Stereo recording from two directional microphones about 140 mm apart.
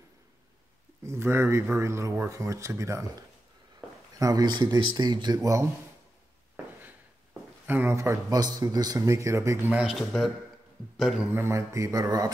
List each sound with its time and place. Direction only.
1.0 s speech: 15° right (ahead or behind)
7.6 s a man's voice: 15° right (ahead or behind)
11.3 s speech: 20° right (ahead or behind)